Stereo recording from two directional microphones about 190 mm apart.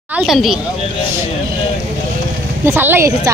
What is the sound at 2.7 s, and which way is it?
Speech, 10° right (ahead or behind).